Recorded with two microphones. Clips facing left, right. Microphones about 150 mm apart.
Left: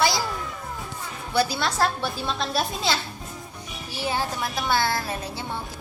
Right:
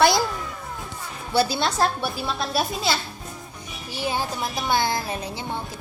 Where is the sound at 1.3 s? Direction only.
25° right (ahead or behind).